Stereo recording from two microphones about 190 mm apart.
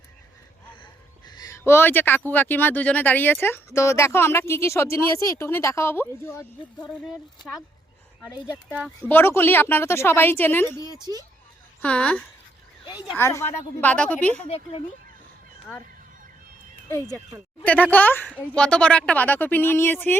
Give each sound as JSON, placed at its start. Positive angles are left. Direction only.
{"t": 1.4, "sound": "speech", "side_deg": 15}
{"t": 9.0, "sound": "speech", "side_deg": 10}
{"t": 11.0, "sound": "speech", "side_deg": -20}
{"t": 11.8, "sound": "speech", "side_deg": 5}
{"t": 14.4, "sound": "speech", "side_deg": 30}
{"t": 16.9, "sound": "speech", "side_deg": 15}